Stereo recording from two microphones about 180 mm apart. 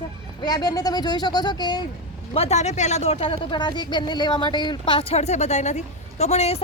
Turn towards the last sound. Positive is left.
turn(degrees=35)  # may be behind; listen again after turning